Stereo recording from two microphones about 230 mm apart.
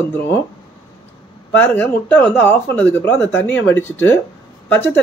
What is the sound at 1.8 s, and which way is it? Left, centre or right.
Speech, centre.